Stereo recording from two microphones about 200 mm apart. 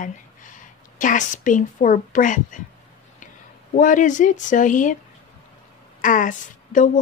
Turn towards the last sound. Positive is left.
turn(degrees=40)  # may be behind; listen again after turning